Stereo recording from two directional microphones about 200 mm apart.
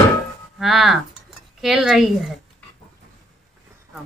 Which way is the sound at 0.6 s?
Centre (ahead or behind).